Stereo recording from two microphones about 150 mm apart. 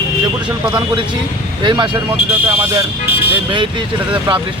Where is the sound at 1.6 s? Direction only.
30° right (ahead or behind).